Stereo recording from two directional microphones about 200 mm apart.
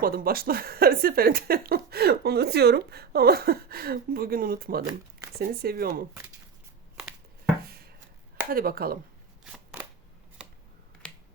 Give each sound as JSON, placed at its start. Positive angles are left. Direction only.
{"t": 0.0, "sound": "speech", "side_deg": -50}
{"t": 8.4, "sound": "speech", "side_deg": -50}
{"t": 9.4, "sound": "scissors", "side_deg": -5}
{"t": 11.0, "sound": "finger snapping", "side_deg": 5}